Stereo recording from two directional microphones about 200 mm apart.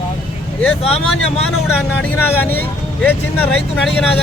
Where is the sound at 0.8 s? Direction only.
30° left (ahead or behind).